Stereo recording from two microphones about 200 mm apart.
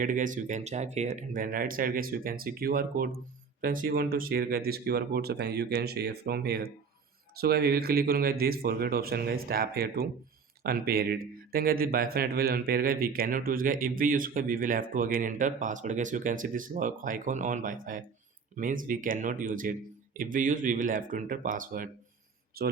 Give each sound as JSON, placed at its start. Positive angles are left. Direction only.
{"t": 0.0, "sound": "speech", "side_deg": -40}